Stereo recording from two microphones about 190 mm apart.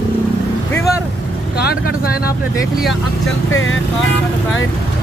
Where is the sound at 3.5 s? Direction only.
90° left.